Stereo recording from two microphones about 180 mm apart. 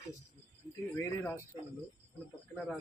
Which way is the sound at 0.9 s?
15° left (ahead or behind).